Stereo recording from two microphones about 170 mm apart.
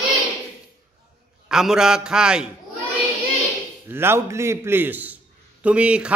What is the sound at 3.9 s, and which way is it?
A man's voice, 15° right (ahead or behind).